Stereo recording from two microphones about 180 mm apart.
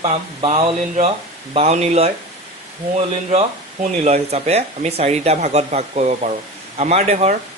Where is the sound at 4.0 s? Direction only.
35° right (ahead or behind).